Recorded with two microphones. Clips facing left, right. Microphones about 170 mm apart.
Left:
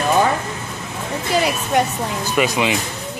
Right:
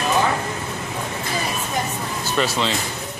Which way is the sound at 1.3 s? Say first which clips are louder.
Left 9 dB; 80° left.